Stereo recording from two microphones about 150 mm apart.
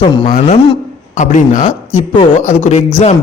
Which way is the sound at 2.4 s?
45° left (ahead or behind).